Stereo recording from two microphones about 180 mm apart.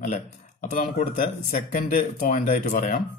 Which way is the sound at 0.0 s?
40° left (ahead or behind).